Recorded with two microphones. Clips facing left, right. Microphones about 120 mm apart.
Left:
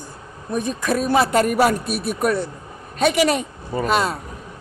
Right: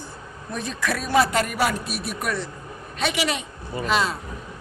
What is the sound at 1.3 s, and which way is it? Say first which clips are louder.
A woman's voice: left 6 dB; 40° left (ahead or behind).